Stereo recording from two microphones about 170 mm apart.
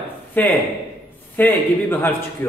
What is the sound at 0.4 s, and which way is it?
A man's voice, 10° left (ahead or behind).